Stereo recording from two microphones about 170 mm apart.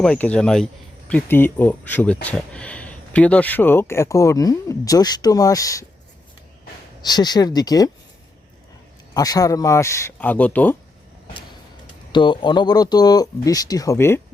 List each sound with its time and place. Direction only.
0.0 s speech: 5° left (ahead or behind)
7.0 s speech: 25° left (ahead or behind)
9.1 s speech: 20° left (ahead or behind)
12.1 s speech: 30° left (ahead or behind)